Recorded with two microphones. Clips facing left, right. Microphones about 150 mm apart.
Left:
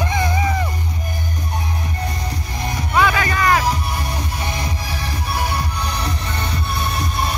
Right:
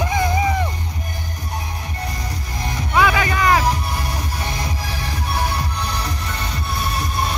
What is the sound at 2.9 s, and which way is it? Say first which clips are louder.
Music: even; 10° right (ahead or behind).